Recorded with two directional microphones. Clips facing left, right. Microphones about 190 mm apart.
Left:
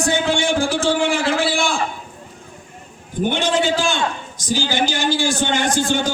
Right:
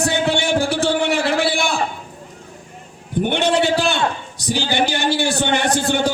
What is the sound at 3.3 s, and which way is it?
A man's voice, 65° right (ahead or behind).